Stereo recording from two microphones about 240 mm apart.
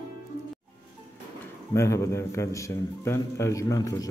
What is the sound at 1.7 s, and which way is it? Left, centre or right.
A man's voice, centre.